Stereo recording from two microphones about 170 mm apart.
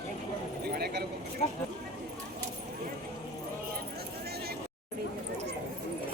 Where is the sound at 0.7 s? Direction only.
70° right (ahead or behind).